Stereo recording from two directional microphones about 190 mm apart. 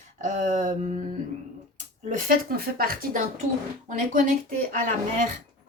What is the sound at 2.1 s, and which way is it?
Speech, 50° right (ahead or behind).